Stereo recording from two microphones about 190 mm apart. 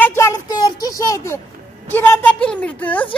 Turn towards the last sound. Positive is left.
turn(degrees=10)  # may be behind; listen again after turning